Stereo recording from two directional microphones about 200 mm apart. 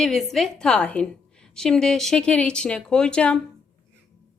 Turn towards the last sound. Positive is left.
turn(degrees=5)  # may be behind; listen again after turning